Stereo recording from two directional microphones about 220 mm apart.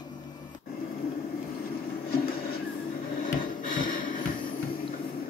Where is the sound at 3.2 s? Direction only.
35° left (ahead or behind).